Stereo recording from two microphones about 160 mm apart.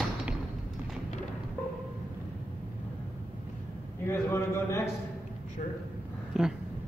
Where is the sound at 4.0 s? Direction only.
15° left (ahead or behind).